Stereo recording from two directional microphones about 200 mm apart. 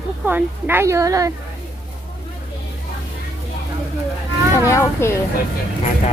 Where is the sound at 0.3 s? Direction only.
10° right (ahead or behind).